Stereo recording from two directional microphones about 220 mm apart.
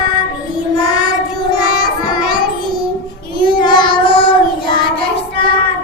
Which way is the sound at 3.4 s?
20° left (ahead or behind).